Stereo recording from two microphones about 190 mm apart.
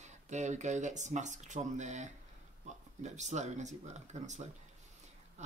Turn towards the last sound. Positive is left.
turn(degrees=-40)  # may be behind; listen again after turning